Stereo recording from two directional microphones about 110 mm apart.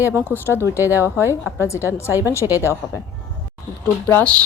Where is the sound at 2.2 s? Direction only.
25° left (ahead or behind).